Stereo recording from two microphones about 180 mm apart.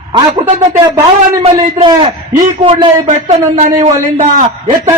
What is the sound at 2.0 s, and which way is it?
A man's voice, 40° right (ahead or behind).